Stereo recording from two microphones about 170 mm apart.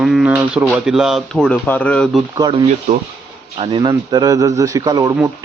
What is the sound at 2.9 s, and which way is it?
Speech, 40° right (ahead or behind).